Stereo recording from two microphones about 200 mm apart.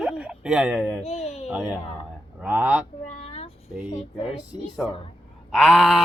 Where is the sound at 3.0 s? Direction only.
30° left (ahead or behind).